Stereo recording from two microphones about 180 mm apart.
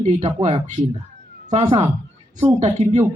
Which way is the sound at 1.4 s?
35° right (ahead or behind).